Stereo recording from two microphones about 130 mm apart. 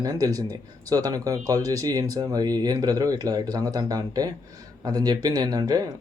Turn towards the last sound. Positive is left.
turn(degrees=-30)  # may be behind; listen again after turning